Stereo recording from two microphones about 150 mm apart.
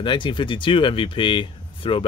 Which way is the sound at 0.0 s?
30° left (ahead or behind).